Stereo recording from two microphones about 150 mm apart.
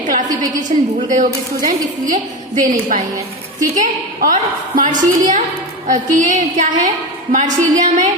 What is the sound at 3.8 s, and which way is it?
A woman's voice, 60° right (ahead or behind).